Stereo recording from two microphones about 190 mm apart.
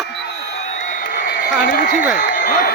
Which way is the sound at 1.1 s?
50° left (ahead or behind).